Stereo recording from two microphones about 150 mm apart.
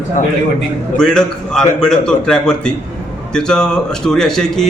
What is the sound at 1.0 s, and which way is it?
A man's voice, 5° left (ahead or behind).